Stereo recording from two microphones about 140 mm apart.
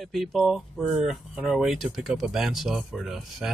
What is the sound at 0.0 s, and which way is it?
Speech, centre (ahead or behind).